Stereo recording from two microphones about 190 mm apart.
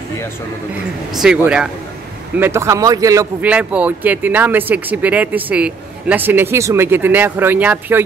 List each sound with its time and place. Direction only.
1.1 s speech: 5° right (ahead or behind)